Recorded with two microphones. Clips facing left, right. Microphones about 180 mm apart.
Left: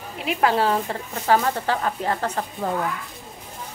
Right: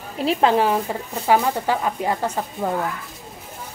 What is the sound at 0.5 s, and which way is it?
Speech, 15° right (ahead or behind).